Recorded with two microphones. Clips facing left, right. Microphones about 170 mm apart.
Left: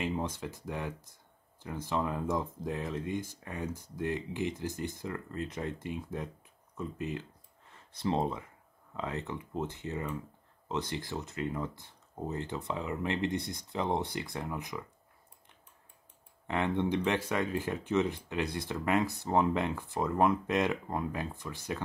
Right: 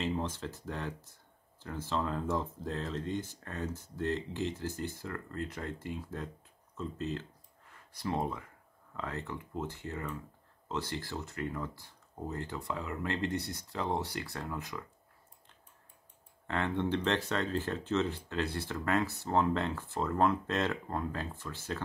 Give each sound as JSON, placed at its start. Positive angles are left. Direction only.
{"t": 0.0, "sound": "speech", "side_deg": 15}
{"t": 16.4, "sound": "speech", "side_deg": 15}